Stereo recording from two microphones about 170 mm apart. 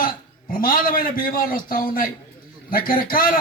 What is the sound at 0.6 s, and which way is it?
A man's voice, 55° left (ahead or behind).